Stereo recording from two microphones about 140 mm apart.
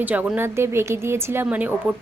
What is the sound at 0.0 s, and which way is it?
A woman's voice, 10° right (ahead or behind).